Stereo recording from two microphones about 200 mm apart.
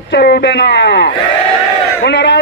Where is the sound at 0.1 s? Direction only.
55° left (ahead or behind).